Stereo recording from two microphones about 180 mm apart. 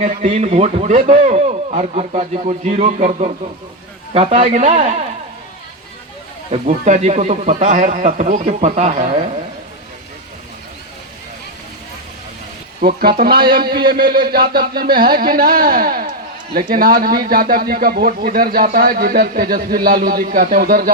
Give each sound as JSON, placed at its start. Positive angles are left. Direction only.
{"t": 0.0, "sound": "a man's voice", "side_deg": -40}
{"t": 6.5, "sound": "speech", "side_deg": -45}
{"t": 13.0, "sound": "speech", "side_deg": -60}